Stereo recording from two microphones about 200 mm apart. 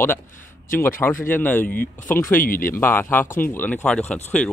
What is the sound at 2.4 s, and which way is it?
Speech, 45° left (ahead or behind).